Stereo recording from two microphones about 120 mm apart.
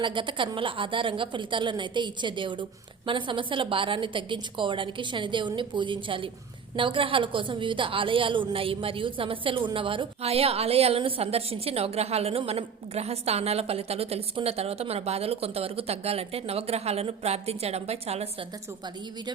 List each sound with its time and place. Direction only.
0.0 s a woman's voice: 45° right (ahead or behind); by 18.3 s 60° right (ahead or behind)